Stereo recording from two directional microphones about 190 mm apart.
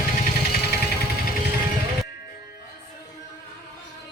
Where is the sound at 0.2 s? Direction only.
55° left (ahead or behind).